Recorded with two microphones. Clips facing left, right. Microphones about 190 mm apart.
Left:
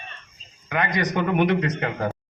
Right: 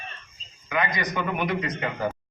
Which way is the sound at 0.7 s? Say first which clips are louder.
Left 3 dB; 65° left (ahead or behind).